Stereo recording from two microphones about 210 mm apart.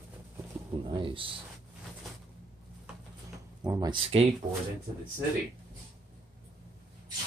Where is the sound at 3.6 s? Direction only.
20° right (ahead or behind).